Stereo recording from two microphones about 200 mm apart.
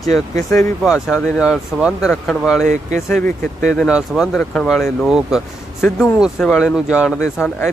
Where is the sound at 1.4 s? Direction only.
5° right (ahead or behind).